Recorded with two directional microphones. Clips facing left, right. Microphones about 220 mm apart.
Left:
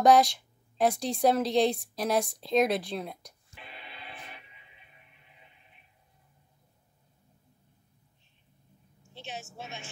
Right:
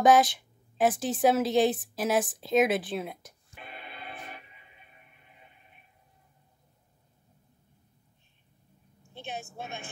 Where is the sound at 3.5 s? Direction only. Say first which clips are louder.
Right 3 dB; 50° right (ahead or behind).